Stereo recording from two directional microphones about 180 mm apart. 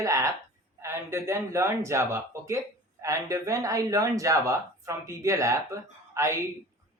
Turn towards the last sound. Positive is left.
turn(degrees=-15)  # may be behind; listen again after turning